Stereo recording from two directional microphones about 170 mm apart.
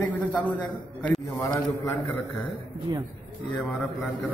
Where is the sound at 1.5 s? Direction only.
20° left (ahead or behind).